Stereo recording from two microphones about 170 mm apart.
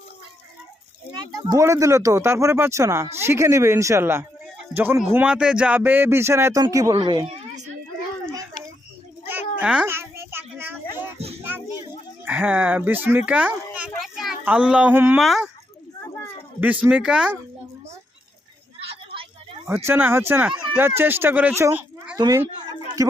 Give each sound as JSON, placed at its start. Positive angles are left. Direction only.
{"t": 1.5, "sound": "a man's voice", "side_deg": -20}
{"t": 9.2, "sound": "cat", "side_deg": -10}
{"t": 12.2, "sound": "a child's voice", "side_deg": -10}
{"t": 16.6, "sound": "a man's voice", "side_deg": -10}
{"t": 18.9, "sound": "a sound", "side_deg": -30}
{"t": 19.6, "sound": "a man's voice", "side_deg": -15}
{"t": 22.5, "sound": "a sound", "side_deg": -25}